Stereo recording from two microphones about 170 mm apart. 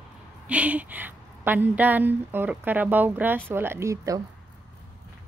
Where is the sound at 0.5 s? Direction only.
10° right (ahead or behind).